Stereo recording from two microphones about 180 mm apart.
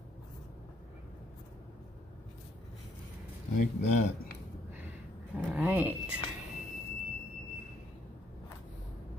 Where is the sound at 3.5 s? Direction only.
40° left (ahead or behind).